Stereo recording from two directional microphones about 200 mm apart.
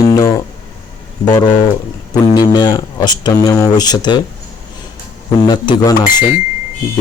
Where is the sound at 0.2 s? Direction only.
15° left (ahead or behind).